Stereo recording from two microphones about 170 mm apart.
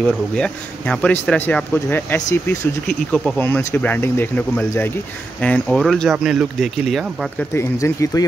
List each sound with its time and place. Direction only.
0.0 s speech: 5° left (ahead or behind)
2.9 s speech: centre (ahead or behind)
3.3 s speech: 10° left (ahead or behind)
7.5 s speech: 20° left (ahead or behind)